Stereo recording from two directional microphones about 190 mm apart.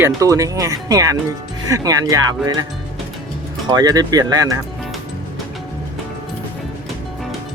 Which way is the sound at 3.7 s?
20° right (ahead or behind).